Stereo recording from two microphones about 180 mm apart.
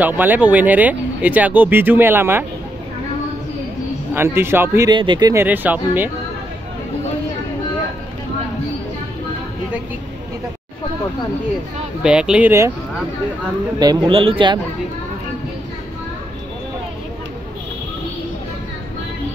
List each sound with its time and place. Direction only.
0.0 s speech: 10° right (ahead or behind)
4.1 s speech: 10° right (ahead or behind)
4.9 s speech: 25° right (ahead or behind)
5.3 s speech: 10° right (ahead or behind)
12.0 s speech: 5° right (ahead or behind)
13.7 s speech: 20° right (ahead or behind)